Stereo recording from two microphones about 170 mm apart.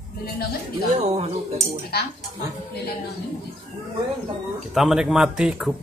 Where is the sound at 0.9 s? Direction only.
40° right (ahead or behind).